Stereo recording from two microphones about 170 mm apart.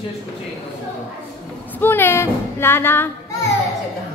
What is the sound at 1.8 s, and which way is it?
Speech, 15° left (ahead or behind).